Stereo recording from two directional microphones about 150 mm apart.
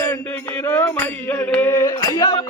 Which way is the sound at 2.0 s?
30° left (ahead or behind).